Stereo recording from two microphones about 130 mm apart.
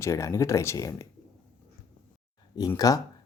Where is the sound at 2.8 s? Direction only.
25° left (ahead or behind).